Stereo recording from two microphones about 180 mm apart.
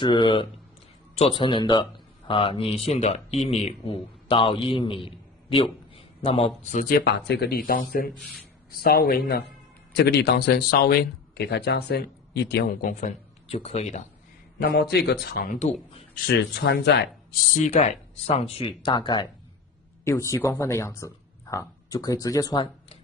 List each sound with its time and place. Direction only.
0.0 s speech: 25° left (ahead or behind)
6.8 s speech: 55° left (ahead or behind)
9.9 s speech: 70° left (ahead or behind)
13.5 s speech: 35° left (ahead or behind)
14.6 s speech: 65° left (ahead or behind)
15.5 s speech: 40° left (ahead or behind)
16.3 s speech: 65° left (ahead or behind)
17.6 s speech: 40° left (ahead or behind); by 22.9 s 25° left (ahead or behind)